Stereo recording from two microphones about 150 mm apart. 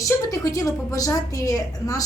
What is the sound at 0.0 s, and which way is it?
A woman's voice, 20° left (ahead or behind).